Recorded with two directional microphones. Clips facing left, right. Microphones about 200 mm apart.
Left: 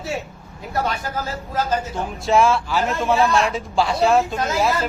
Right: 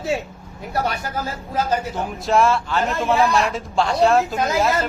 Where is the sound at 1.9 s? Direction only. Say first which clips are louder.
Left 2 dB; centre (ahead or behind).